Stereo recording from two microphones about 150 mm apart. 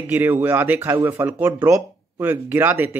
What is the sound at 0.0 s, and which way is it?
Speech, 15° right (ahead or behind).